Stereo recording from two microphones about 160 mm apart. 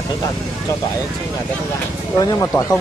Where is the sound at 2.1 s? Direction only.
20° left (ahead or behind).